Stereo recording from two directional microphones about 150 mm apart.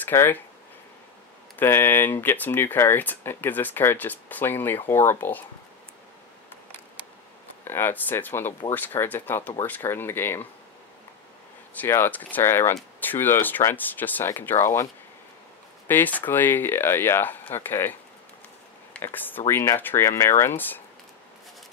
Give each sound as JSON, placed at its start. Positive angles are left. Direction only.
{"t": 0.0, "sound": "speech", "side_deg": 15}
{"t": 1.6, "sound": "speech", "side_deg": 15}
{"t": 7.6, "sound": "speech", "side_deg": 15}
{"t": 11.7, "sound": "speech", "side_deg": 15}
{"t": 15.9, "sound": "speech", "side_deg": 10}
{"t": 18.9, "sound": "speech", "side_deg": 10}